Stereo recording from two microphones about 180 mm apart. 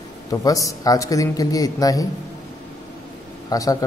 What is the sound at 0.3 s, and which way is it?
Speech, 20° left (ahead or behind).